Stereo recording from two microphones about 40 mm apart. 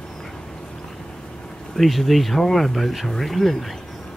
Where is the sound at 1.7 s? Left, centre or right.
Centre.